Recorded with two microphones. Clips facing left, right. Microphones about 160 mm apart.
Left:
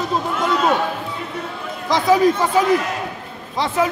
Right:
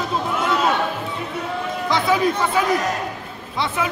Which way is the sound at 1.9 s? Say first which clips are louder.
Left 5 dB; 40° left (ahead or behind).